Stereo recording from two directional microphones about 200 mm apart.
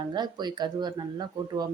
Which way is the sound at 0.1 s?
20° right (ahead or behind).